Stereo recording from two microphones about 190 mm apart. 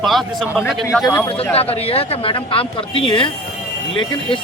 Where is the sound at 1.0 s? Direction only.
15° left (ahead or behind).